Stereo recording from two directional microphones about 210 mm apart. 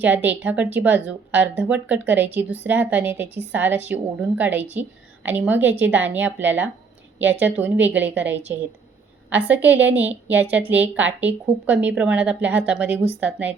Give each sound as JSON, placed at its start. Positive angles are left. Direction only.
{"t": 0.0, "sound": "a woman's voice", "side_deg": -10}